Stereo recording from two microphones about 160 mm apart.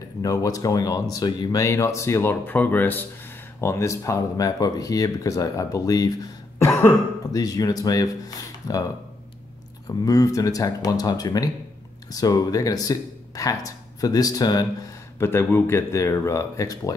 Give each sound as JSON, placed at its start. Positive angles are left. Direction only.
{"t": 0.2, "sound": "speech", "side_deg": 20}
{"t": 9.8, "sound": "speech", "side_deg": 20}